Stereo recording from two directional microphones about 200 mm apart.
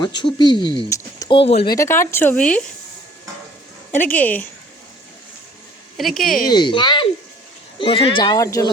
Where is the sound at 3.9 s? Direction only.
40° left (ahead or behind).